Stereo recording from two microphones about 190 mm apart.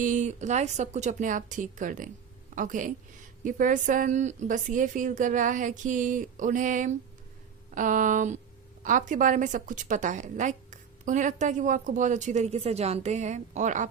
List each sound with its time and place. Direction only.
0.0 s a woman's voice: 40° right (ahead or behind)